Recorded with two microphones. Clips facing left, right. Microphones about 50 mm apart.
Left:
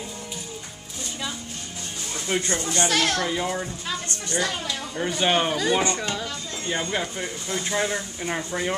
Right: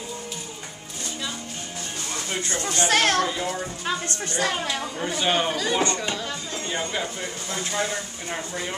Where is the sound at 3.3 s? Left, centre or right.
Centre.